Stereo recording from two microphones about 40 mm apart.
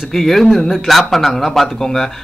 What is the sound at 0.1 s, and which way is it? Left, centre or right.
A man's voice, centre.